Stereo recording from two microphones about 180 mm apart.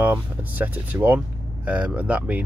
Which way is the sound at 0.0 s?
10° right (ahead or behind).